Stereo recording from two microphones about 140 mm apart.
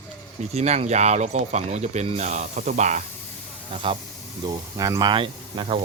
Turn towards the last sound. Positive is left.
turn(degrees=-35)  # may be behind; listen again after turning